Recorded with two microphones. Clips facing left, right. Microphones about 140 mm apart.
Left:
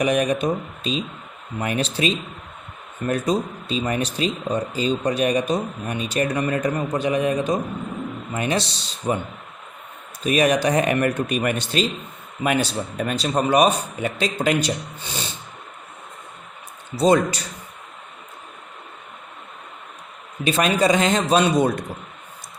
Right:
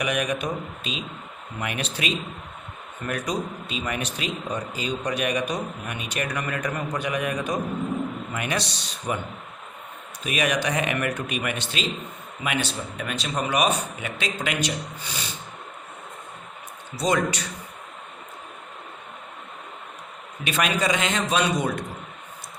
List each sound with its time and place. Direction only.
0.0 s speech: 35° left (ahead or behind)
10.2 s speech: 35° left (ahead or behind)
17.0 s speech: 30° left (ahead or behind)
20.4 s speech: 35° left (ahead or behind)